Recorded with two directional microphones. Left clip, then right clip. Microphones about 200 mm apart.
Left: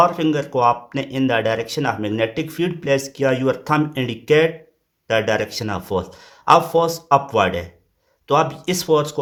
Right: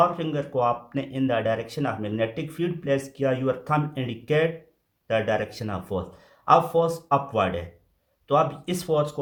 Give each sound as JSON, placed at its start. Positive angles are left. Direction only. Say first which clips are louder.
{"t": 0.0, "sound": "speech", "louder": "left 6 dB", "side_deg": 45}